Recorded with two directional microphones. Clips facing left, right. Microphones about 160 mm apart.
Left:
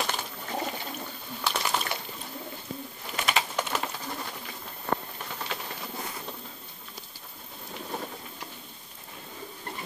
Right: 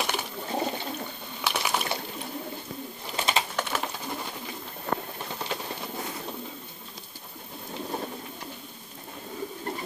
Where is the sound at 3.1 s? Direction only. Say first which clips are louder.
Right 1 dB; 25° right (ahead or behind).